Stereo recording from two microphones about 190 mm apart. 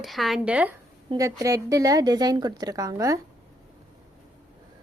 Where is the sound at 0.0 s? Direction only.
Centre (ahead or behind).